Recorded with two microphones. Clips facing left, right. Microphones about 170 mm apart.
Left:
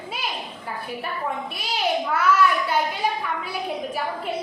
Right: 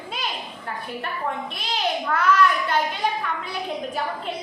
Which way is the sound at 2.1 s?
10° left (ahead or behind).